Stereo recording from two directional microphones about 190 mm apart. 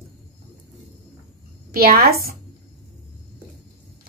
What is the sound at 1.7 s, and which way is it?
Speech, 55° right (ahead or behind).